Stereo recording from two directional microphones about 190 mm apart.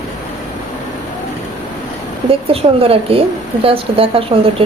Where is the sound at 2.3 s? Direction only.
30° right (ahead or behind).